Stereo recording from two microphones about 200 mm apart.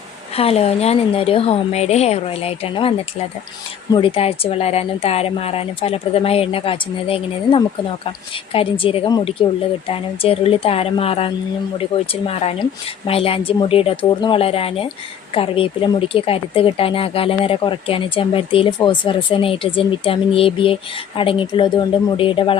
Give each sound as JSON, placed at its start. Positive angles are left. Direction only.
{"t": 0.3, "sound": "speech", "side_deg": 30}
{"t": 3.9, "sound": "speech", "side_deg": 25}